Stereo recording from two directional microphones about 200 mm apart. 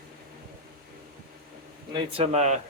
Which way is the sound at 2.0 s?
30° right (ahead or behind).